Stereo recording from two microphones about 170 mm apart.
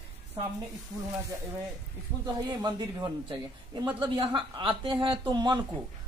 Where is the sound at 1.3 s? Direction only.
15° right (ahead or behind).